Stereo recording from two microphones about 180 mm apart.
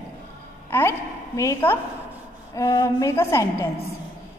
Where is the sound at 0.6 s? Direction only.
15° left (ahead or behind).